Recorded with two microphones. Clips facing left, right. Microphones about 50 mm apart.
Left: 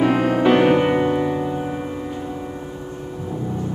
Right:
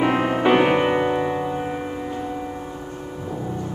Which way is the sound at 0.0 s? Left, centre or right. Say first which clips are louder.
Left 2 dB; centre.